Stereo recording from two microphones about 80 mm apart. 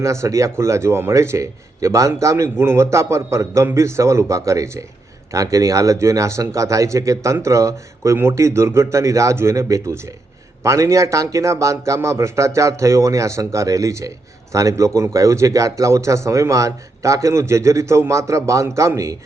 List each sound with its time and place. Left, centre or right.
0.0 s a man's voice: right